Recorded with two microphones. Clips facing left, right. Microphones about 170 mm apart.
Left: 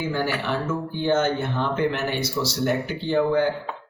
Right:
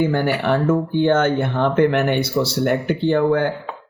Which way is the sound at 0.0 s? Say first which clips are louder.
Right 7 dB; 55° right (ahead or behind).